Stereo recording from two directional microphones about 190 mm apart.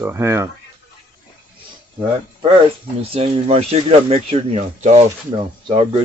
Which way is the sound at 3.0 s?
30° right (ahead or behind).